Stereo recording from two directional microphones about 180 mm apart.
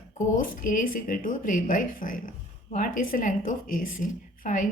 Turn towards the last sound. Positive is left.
turn(degrees=50)  # may be behind; listen again after turning